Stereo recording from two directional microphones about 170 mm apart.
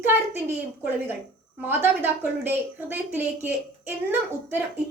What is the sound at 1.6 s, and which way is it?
A woman's voice, 10° right (ahead or behind).